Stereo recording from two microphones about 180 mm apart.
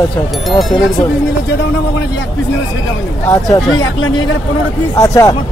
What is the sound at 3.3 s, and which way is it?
Speech, 20° left (ahead or behind).